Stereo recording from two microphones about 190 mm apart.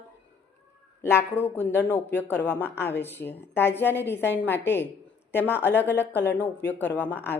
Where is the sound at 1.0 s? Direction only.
10° left (ahead or behind).